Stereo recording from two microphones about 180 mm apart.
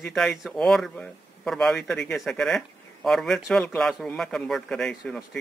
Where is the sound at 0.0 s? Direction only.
5° left (ahead or behind).